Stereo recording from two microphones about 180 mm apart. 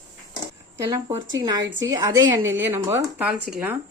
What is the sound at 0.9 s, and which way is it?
Speech, 20° right (ahead or behind).